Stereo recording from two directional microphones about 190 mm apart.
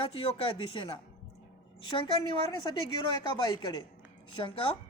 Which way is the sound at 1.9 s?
25° left (ahead or behind).